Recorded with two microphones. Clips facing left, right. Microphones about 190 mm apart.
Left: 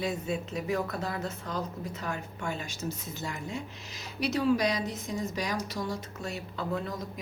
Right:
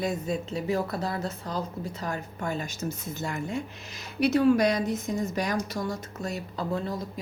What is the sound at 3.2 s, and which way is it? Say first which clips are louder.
A woman's voice: right 8 dB; 55° right (ahead or behind).